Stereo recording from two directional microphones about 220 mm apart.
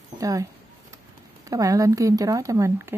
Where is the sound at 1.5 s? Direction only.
15° right (ahead or behind).